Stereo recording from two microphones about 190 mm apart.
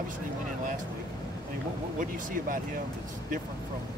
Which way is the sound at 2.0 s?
45° right (ahead or behind).